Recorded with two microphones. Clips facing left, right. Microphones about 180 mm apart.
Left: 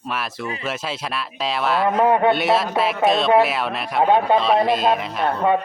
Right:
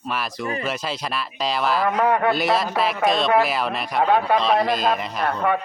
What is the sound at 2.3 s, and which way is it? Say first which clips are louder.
Speech: left 2 dB; centre (ahead or behind).